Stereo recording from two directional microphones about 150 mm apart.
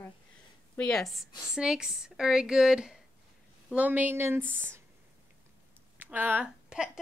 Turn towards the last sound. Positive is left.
turn(degrees=-5)  # may be behind; listen again after turning